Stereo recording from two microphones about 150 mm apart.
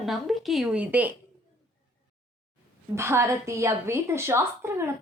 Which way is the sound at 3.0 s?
20° right (ahead or behind).